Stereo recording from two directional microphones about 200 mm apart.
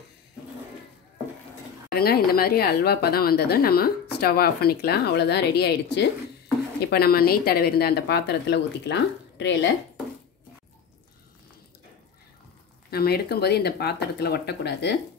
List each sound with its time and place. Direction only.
2.0 s a woman's voice: 50° left (ahead or behind)
12.9 s a woman's voice: 50° left (ahead or behind)